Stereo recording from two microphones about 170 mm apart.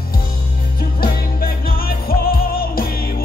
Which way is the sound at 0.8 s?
60° left (ahead or behind).